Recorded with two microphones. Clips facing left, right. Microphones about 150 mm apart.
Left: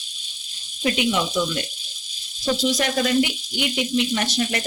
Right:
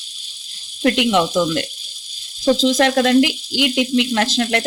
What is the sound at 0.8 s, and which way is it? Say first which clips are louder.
Speech: right 6 dB; 75° right (ahead or behind).